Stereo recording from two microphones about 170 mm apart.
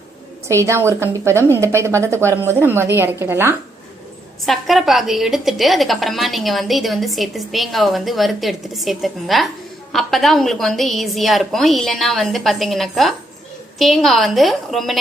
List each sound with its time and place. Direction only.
0.4 s a woman's voice: 15° right (ahead or behind)
4.4 s a woman's voice: centre (ahead or behind)